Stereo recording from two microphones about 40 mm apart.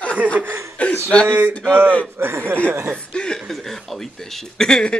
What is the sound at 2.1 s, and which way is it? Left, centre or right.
Speech, right.